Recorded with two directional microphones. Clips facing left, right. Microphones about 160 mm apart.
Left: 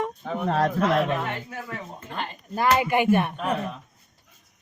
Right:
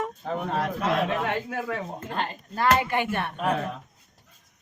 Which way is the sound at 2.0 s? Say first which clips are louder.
Right 2 dB; 35° right (ahead or behind).